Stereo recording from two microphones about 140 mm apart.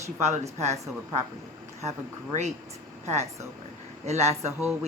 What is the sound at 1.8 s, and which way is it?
Speech, 55° right (ahead or behind).